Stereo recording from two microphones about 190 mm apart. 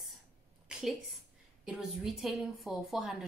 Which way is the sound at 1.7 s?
Centre (ahead or behind).